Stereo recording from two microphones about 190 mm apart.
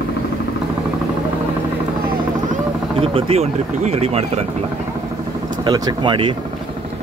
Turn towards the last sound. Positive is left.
turn(degrees=-25)  # may be behind; listen again after turning